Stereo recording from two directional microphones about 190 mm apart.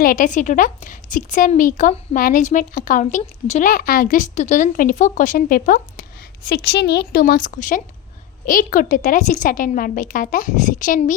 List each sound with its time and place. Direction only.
0.0 s a woman's voice: 45° left (ahead or behind)